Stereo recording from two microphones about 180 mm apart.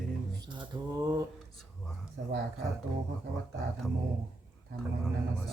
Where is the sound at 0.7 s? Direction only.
20° right (ahead or behind).